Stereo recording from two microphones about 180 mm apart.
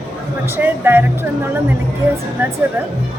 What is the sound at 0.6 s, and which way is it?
Speech, 10° right (ahead or behind).